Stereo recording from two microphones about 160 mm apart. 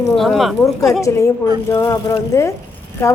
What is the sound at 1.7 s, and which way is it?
A woman's voice, 20° left (ahead or behind).